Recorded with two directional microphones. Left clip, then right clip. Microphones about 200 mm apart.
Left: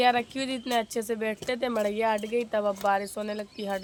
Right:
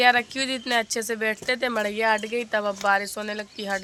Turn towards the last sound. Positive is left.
turn(degrees=-5)  # may be behind; listen again after turning